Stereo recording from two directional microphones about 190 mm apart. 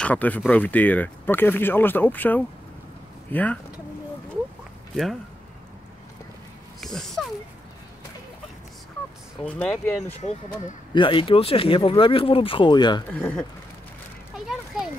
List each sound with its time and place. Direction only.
0.0 s speech: 10° left (ahead or behind)
6.8 s speech: centre (ahead or behind)
9.4 s speech: 5° left (ahead or behind)
11.0 s speech: 25° left (ahead or behind)
13.1 s speech: 10° left (ahead or behind)
14.7 s a sound: centre (ahead or behind)